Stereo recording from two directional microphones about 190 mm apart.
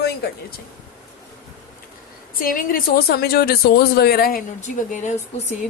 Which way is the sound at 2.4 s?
45° left (ahead or behind).